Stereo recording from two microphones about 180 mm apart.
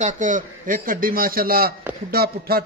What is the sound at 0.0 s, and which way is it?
A man's voice, 45° right (ahead or behind).